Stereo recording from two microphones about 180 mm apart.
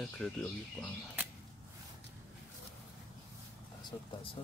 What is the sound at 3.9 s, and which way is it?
Speech, 20° left (ahead or behind).